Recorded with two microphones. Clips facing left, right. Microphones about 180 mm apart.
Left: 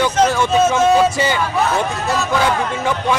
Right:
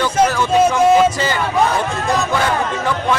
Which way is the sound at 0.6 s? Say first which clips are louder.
Right 2 dB; 15° right (ahead or behind).